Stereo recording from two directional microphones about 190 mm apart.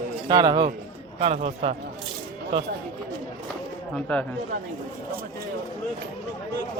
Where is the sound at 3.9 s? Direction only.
5° left (ahead or behind).